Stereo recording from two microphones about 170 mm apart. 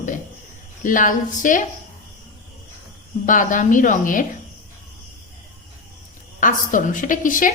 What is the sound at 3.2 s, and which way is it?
A woman's voice, 50° left (ahead or behind).